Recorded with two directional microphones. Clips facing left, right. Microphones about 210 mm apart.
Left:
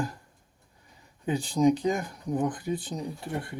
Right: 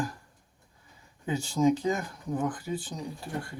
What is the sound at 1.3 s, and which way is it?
Speech, 15° left (ahead or behind).